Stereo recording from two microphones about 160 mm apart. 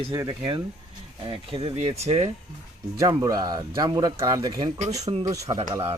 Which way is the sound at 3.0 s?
20° right (ahead or behind).